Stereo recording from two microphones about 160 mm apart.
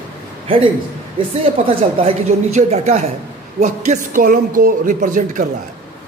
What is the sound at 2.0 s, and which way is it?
Speech, 45° right (ahead or behind).